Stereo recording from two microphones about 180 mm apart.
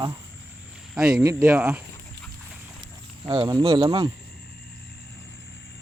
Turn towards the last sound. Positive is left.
turn(degrees=-30)  # may be behind; listen again after turning